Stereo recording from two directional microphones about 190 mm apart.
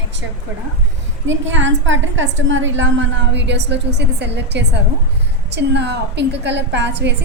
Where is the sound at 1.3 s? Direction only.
75° right (ahead or behind).